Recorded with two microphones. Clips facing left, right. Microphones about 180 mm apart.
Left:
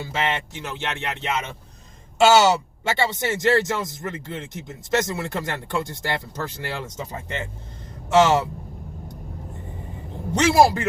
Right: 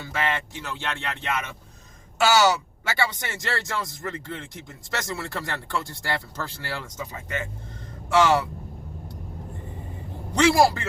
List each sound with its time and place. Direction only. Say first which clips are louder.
0.0 s speech: left 2 dB; 25° left (ahead or behind)
10.3 s speech: left 2 dB; 20° left (ahead or behind)